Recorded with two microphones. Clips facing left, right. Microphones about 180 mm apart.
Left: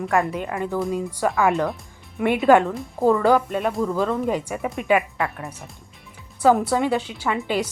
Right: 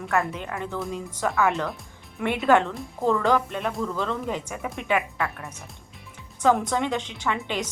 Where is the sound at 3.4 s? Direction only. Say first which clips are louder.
Left 5 dB; 40° left (ahead or behind).